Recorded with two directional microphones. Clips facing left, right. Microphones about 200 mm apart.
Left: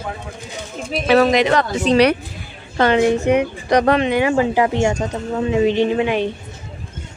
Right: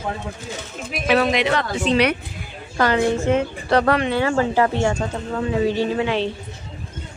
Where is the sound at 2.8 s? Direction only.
20° left (ahead or behind).